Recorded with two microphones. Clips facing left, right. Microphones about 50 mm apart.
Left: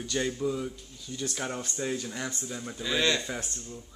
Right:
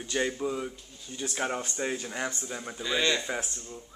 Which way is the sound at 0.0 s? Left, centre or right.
Right.